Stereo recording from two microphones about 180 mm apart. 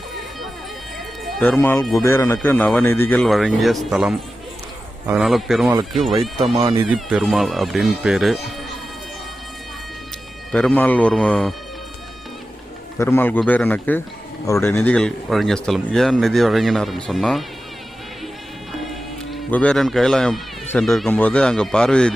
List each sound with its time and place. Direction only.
1.2 s a sound: centre (ahead or behind)
1.5 s speech: 15° left (ahead or behind)
6.6 s speech: 25° right (ahead or behind)
6.8 s speech: centre (ahead or behind)
10.5 s speech: 5° left (ahead or behind)
13.0 s speech: 15° left (ahead or behind)
19.3 s speech: 5° left (ahead or behind)